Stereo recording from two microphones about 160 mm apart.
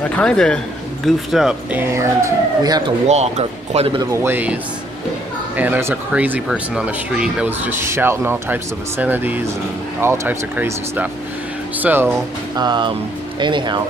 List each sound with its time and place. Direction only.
0.1 s speech: 5° left (ahead or behind)
1.8 s speech: 15° right (ahead or behind)
3.1 s speech: 45° right (ahead or behind)
4.0 s speech: 15° right (ahead or behind)
5.6 s speech: 15° right (ahead or behind)
12.5 s speech: 25° right (ahead or behind)